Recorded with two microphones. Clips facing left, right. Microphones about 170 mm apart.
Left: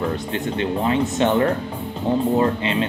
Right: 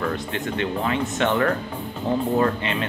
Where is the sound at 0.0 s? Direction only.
30° left (ahead or behind).